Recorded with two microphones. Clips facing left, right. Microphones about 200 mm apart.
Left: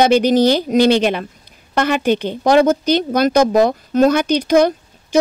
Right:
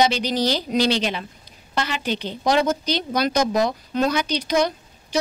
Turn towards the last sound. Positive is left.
turn(degrees=55)  # may be behind; listen again after turning